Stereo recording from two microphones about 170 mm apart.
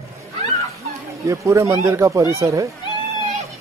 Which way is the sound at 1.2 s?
15° right (ahead or behind).